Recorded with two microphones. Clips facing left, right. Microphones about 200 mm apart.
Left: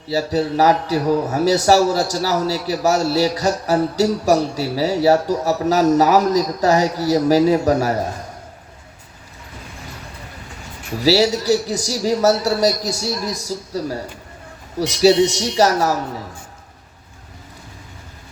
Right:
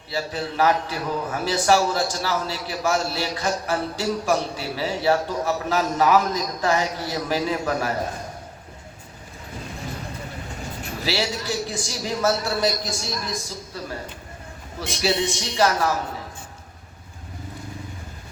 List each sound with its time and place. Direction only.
0.1 s a man's voice: 40° left (ahead or behind)
11.0 s a man's voice: 40° left (ahead or behind)